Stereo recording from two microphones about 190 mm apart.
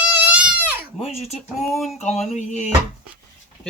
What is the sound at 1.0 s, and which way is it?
Speech, 30° left (ahead or behind).